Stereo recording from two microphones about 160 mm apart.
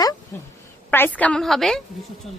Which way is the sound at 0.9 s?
10° left (ahead or behind).